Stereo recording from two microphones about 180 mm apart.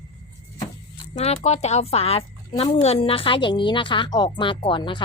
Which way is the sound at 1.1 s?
40° left (ahead or behind).